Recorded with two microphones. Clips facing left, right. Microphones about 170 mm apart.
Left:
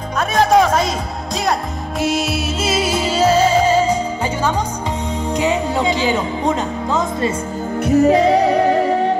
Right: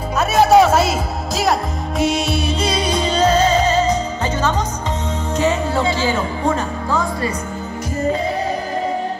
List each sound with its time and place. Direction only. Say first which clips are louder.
0.2 s music: right 2 dB; 5° right (ahead or behind); by 7.3 s 20° left (ahead or behind)
7.8 s music: left 8 dB; 75° left (ahead or behind)